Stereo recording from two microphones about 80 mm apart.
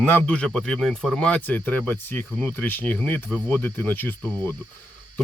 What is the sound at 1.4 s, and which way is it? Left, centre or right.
Speech, left.